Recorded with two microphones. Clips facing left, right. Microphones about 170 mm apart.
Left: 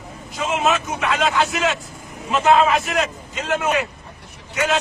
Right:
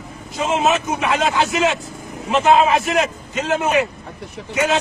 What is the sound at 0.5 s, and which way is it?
A man's voice, 25° right (ahead or behind).